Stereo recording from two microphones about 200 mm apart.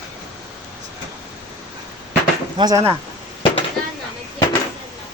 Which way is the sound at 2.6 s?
15° right (ahead or behind).